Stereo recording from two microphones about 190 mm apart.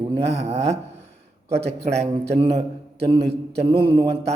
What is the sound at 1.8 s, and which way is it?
Speech, 35° right (ahead or behind).